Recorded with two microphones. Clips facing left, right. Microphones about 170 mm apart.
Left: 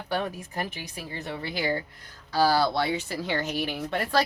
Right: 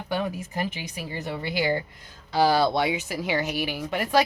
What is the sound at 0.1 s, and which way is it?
Speech, 10° right (ahead or behind).